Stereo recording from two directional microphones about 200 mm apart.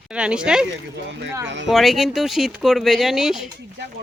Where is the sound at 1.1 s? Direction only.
65° right (ahead or behind).